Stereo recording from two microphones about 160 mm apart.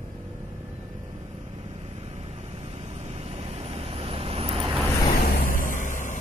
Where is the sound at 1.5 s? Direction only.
40° right (ahead or behind).